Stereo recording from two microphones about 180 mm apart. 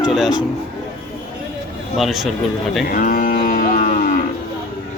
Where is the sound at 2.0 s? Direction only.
Centre (ahead or behind).